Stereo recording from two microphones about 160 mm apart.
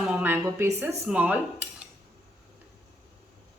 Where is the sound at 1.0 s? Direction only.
10° right (ahead or behind).